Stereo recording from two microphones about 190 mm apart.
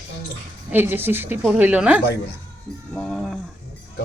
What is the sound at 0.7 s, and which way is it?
A woman's voice, 10° right (ahead or behind).